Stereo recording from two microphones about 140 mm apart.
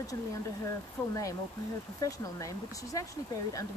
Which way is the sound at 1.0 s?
10° left (ahead or behind).